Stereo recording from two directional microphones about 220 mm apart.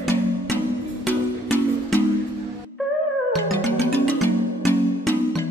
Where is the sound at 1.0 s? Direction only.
5° left (ahead or behind).